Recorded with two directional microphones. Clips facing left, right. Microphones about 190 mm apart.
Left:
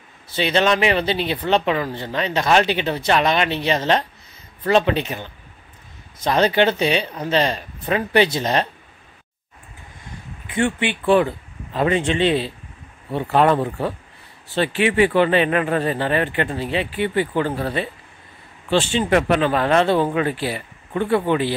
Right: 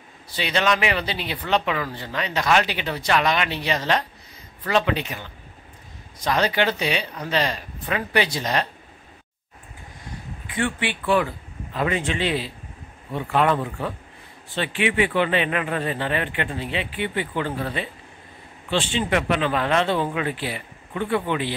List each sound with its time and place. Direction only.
0.3 s speech: 25° left (ahead or behind)
10.5 s speech: 25° left (ahead or behind)